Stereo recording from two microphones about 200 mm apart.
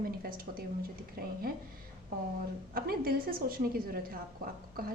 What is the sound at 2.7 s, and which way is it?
A woman's voice, 50° right (ahead or behind).